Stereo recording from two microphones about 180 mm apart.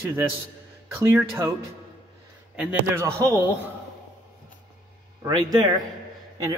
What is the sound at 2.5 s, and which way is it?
Speech, 10° right (ahead or behind).